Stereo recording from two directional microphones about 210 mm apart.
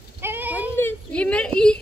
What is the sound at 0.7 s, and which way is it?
Speech, 10° left (ahead or behind).